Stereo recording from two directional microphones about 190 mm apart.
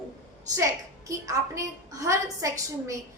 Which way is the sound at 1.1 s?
15° right (ahead or behind).